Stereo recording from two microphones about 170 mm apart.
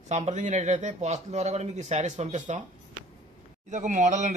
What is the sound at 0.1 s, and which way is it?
Speech, 45° right (ahead or behind).